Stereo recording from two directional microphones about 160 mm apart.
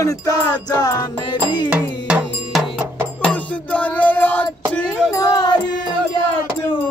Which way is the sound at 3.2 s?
10° left (ahead or behind).